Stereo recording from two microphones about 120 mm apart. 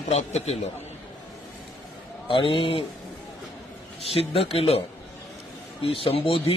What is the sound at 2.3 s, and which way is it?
Speech, 45° left (ahead or behind).